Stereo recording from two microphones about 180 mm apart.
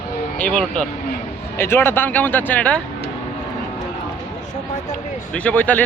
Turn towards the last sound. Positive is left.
turn(degrees=10)  # may be behind; listen again after turning